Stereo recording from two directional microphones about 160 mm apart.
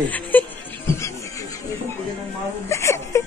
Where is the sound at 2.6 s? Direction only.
15° left (ahead or behind).